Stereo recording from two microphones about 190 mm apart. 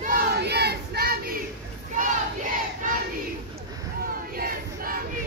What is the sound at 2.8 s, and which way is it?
Battle cry, 45° right (ahead or behind).